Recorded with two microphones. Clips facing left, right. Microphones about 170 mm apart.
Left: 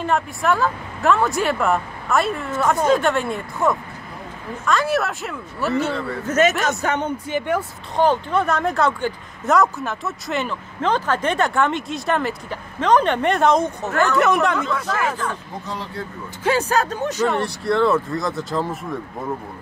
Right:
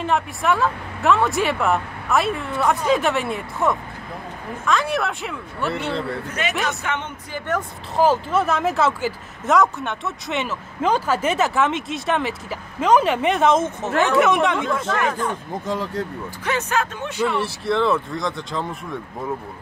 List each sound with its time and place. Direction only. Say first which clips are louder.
0.0 s speech: left 1 dB; centre (ahead or behind)
6.2 s a man's voice: left 7 dB; 45° left (ahead or behind)
7.9 s speech: even; 5° right (ahead or behind)
15.6 s speech: right 7 dB; 45° right (ahead or behind)
16.4 s speech: left 4 dB; 35° left (ahead or behind)
17.4 s speech: left 2 dB; centre (ahead or behind)